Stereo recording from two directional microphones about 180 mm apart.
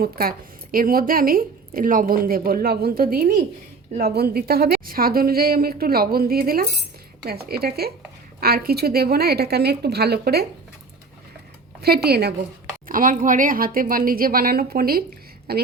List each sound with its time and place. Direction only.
0.0 s a woman's voice: 55° right (ahead or behind)
11.8 s a woman's voice: 60° right (ahead or behind)
12.9 s a woman's voice: 50° right (ahead or behind)